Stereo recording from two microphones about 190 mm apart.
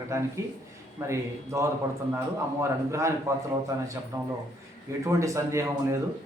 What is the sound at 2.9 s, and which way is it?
A man's voice, 15° right (ahead or behind).